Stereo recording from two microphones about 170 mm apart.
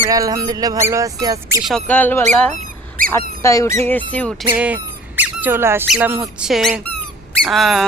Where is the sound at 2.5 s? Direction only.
50° right (ahead or behind).